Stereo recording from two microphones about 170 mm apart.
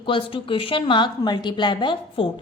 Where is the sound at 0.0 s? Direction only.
30° left (ahead or behind).